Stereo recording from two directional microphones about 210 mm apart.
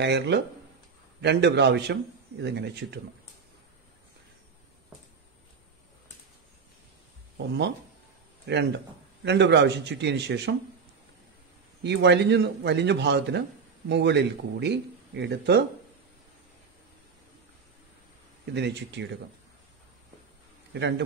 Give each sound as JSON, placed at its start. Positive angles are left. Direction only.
{"t": 0.0, "sound": "a man's voice", "side_deg": -55}
{"t": 8.5, "sound": "a man's voice", "side_deg": -55}
{"t": 11.8, "sound": "a man's voice", "side_deg": -55}
{"t": 18.4, "sound": "a man's voice", "side_deg": -55}